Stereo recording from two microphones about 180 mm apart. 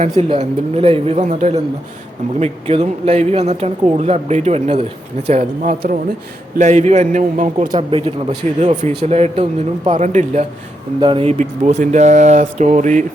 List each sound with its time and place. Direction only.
0.0 s a man's voice: 35° right (ahead or behind)
7.6 s a man's voice: 25° right (ahead or behind)
11.0 s a man's voice: 30° right (ahead or behind)